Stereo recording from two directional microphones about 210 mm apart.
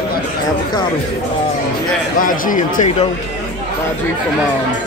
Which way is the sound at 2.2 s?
40° left (ahead or behind).